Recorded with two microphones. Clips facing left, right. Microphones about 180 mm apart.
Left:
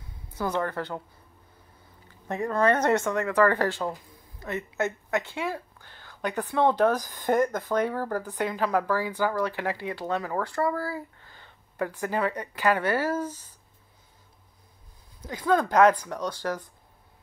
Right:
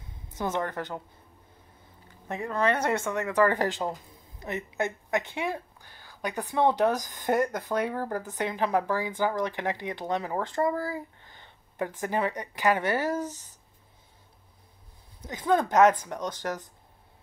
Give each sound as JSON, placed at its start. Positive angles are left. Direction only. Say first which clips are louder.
{"t": 0.0, "sound": "a woman's voice", "louder": "left 1 dB", "side_deg": -20}
{"t": 2.2, "sound": "speech", "louder": "left 3 dB", "side_deg": 35}
{"t": 2.8, "sound": "speech", "louder": "left 4 dB", "side_deg": -20}
{"t": 15.2, "sound": "speech", "louder": "left 1 dB", "side_deg": -20}